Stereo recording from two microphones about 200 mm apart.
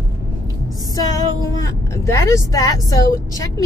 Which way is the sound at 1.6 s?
15° left (ahead or behind).